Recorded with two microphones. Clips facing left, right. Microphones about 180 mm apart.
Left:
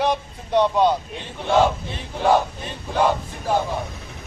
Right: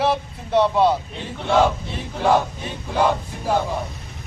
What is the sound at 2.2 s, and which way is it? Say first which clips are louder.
A man's voice: even; centre (ahead or behind).